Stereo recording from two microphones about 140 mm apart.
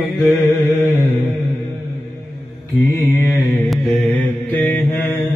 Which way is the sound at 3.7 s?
Centre (ahead or behind).